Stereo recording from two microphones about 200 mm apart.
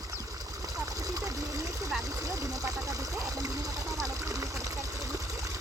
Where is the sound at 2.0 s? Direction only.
15° right (ahead or behind).